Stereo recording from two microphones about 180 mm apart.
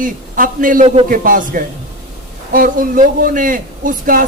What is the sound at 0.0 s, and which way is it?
A man's voice, 50° right (ahead or behind).